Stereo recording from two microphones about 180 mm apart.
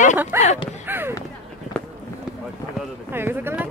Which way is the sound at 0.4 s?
35° left (ahead or behind).